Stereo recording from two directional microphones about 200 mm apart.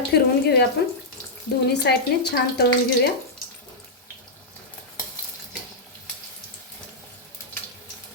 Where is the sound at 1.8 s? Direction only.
55° left (ahead or behind).